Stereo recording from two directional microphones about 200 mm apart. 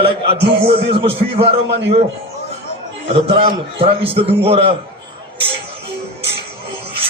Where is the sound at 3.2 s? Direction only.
30° right (ahead or behind).